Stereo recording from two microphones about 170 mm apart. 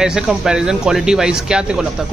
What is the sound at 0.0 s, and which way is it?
Speech, 5° right (ahead or behind).